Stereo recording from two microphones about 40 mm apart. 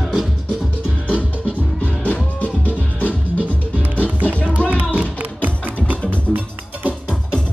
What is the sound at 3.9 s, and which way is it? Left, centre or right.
Music, right.